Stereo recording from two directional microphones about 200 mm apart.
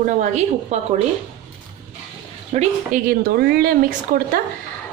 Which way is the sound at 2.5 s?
40° right (ahead or behind).